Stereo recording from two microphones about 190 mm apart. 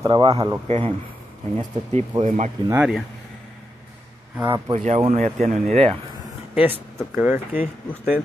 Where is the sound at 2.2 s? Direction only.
40° right (ahead or behind).